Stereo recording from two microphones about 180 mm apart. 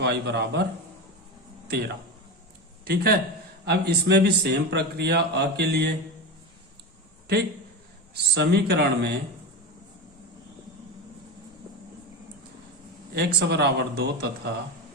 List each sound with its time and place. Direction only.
0.0 s a man's voice: 70° right (ahead or behind)
2.8 s a man's voice: 60° right (ahead or behind)
8.1 s a man's voice: 70° right (ahead or behind)
13.1 s speech: 65° right (ahead or behind)